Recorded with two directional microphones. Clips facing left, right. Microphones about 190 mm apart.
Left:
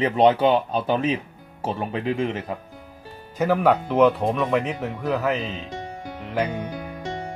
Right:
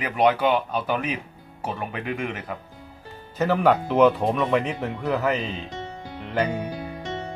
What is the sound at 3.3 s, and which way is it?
Speech, 5° left (ahead or behind).